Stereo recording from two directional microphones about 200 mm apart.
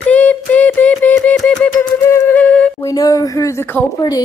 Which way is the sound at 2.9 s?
20° left (ahead or behind).